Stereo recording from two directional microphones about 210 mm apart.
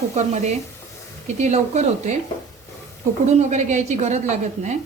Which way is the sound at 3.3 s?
35° right (ahead or behind).